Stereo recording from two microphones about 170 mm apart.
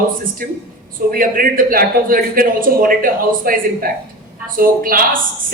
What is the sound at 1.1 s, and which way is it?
A woman's voice, 55° right (ahead or behind).